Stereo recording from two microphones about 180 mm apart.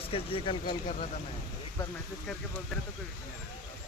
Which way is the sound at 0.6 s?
45° left (ahead or behind).